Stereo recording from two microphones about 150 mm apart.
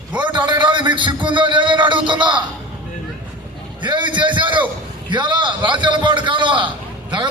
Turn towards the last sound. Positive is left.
turn(degrees=-35)  # may be behind; listen again after turning